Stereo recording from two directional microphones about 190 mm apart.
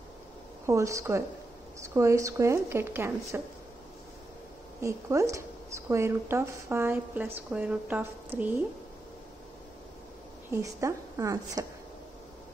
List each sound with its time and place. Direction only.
0.7 s a woman's voice: 15° right (ahead or behind)
4.8 s a woman's voice: 15° right (ahead or behind)
10.5 s a woman's voice: 15° right (ahead or behind)